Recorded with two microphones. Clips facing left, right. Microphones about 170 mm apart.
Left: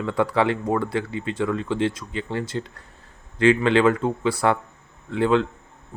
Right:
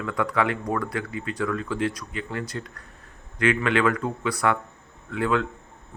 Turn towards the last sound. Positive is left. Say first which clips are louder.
# left 4 dB
turn(degrees=30)  # may be behind; listen again after turning